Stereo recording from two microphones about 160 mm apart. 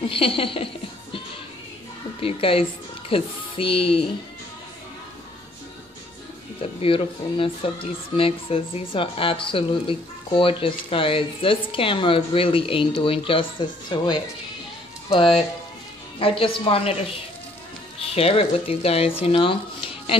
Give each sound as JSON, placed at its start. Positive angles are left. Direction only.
{"t": 0.1, "sound": "speech", "side_deg": 35}
{"t": 2.1, "sound": "speech", "side_deg": 35}
{"t": 6.8, "sound": "speech", "side_deg": 35}
{"t": 18.1, "sound": "speech", "side_deg": 40}